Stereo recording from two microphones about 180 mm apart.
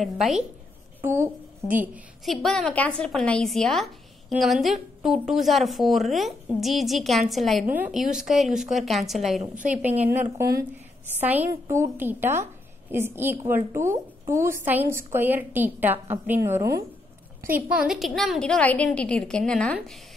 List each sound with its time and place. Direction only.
0.0 s a woman's voice: centre (ahead or behind)
1.0 s a woman's voice: 15° right (ahead or behind)
1.8 s a woman's voice: centre (ahead or behind)
9.4 s a woman's voice: 45° right (ahead or behind)
10.1 s a woman's voice: 15° right (ahead or behind)
17.6 s a woman's voice: 5° right (ahead or behind)